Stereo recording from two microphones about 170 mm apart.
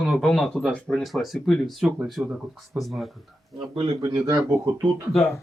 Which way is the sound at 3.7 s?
25° right (ahead or behind).